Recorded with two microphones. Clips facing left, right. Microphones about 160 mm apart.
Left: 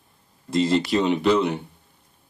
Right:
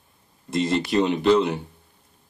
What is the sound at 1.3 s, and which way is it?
Speech, 60° left (ahead or behind).